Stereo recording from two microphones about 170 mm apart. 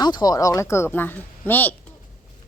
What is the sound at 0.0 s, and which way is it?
Speech, 25° left (ahead or behind).